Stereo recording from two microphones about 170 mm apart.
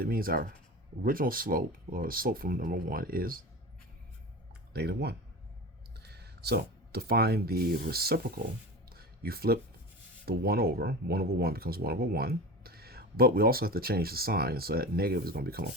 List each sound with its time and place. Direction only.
0.0 s speech: 60° right (ahead or behind)
4.7 s speech: 75° right (ahead or behind)
8.9 s a sound: 65° right (ahead or behind)
10.2 s speech: 65° right (ahead or behind)